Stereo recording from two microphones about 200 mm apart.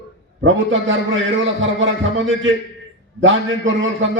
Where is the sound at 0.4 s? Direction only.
70° right (ahead or behind).